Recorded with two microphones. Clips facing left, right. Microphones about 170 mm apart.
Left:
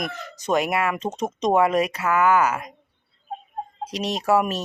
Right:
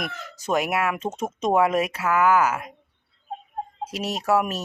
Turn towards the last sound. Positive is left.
turn(degrees=0)  # may be behind; listen again after turning